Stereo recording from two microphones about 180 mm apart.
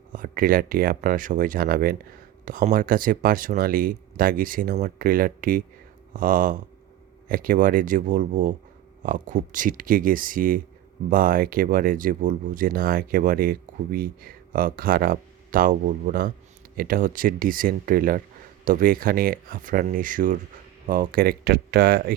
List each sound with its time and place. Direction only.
0.1 s speech: 50° right (ahead or behind)